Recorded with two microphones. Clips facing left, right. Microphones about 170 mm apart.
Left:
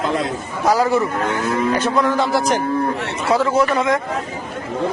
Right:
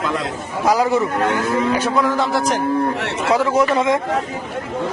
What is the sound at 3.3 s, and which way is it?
Speech, 15° right (ahead or behind).